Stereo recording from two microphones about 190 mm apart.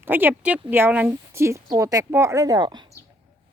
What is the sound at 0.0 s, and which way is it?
Speech, 10° right (ahead or behind).